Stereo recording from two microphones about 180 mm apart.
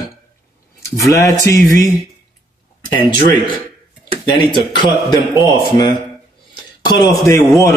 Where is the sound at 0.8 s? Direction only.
15° left (ahead or behind).